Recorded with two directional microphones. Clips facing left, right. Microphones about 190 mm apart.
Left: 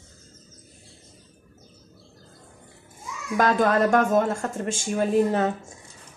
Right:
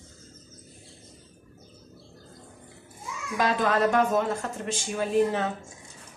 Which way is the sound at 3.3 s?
50° left (ahead or behind).